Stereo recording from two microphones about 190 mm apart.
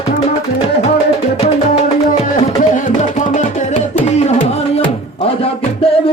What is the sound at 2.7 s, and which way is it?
Music, 40° left (ahead or behind).